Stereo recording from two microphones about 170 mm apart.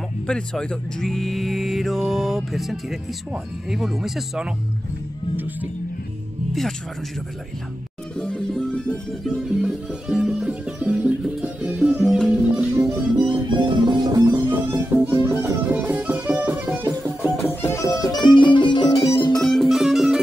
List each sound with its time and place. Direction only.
0.3 s speech: 5° left (ahead or behind)
8.2 s music: 5° left (ahead or behind)
13.2 s music: 30° right (ahead or behind); by 16.8 s 10° right (ahead or behind)
17.4 s music: 15° left (ahead or behind)
19.4 s music: centre (ahead or behind)